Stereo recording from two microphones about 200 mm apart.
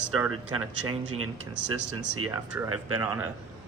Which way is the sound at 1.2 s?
75° right (ahead or behind).